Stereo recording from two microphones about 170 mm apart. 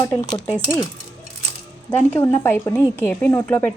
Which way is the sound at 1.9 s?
10° left (ahead or behind).